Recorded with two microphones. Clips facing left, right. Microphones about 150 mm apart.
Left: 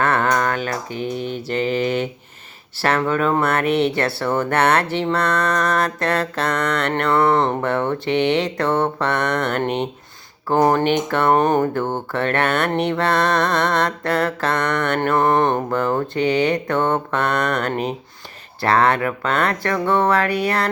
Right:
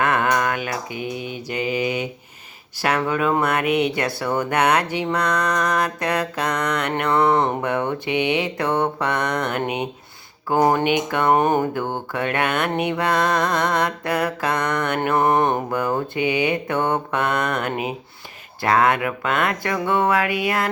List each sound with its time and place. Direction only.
0.0 s a sound: 15° right (ahead or behind)
0.9 s mantra: 10° right (ahead or behind)
20.2 s music: 40° left (ahead or behind)